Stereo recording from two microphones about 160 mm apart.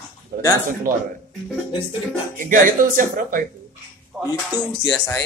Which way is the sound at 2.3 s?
55° right (ahead or behind).